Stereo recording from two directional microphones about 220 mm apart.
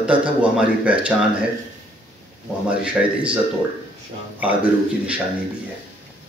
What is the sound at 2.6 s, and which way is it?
Speech, 5° right (ahead or behind).